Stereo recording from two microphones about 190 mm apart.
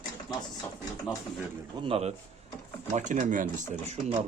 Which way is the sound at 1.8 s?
30° right (ahead or behind).